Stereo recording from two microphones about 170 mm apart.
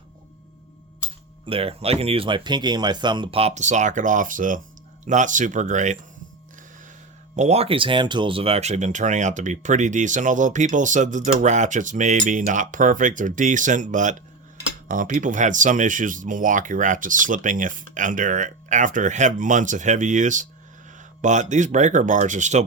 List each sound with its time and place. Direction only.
1.5 s speech: 35° right (ahead or behind)
7.3 s speech: 40° right (ahead or behind)